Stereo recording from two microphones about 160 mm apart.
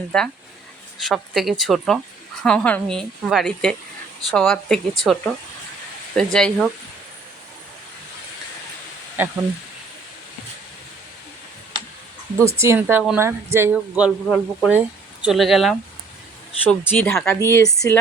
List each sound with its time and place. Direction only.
0.1 s a woman's voice: 5° left (ahead or behind)
9.2 s a woman's voice: 10° right (ahead or behind)
12.5 s a woman's voice: 15° right (ahead or behind); by 15.7 s centre (ahead or behind)
16.6 s speech: 10° left (ahead or behind)
17.4 s speech: 15° left (ahead or behind)